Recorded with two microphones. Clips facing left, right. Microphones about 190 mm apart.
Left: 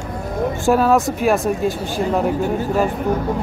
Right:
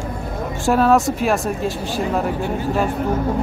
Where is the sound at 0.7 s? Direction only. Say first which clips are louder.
Even; centre (ahead or behind).